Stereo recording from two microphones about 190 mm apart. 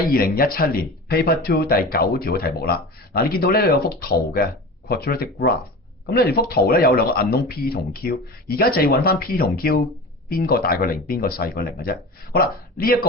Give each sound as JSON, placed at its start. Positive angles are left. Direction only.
{"t": 0.1, "sound": "speech", "side_deg": 50}